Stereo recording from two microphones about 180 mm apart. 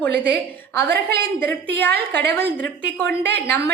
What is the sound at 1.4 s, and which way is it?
Speech, 10° left (ahead or behind).